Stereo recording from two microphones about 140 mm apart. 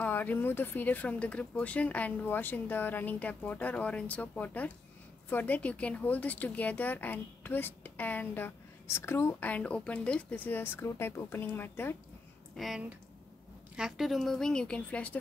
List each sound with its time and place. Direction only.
0.0 s a woman's voice: 10° left (ahead or behind)
12.5 s a woman's voice: centre (ahead or behind)